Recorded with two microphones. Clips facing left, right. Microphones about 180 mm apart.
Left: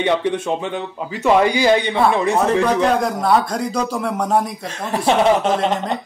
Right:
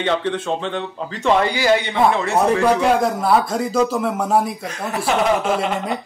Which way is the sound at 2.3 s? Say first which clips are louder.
Even; 10° right (ahead or behind).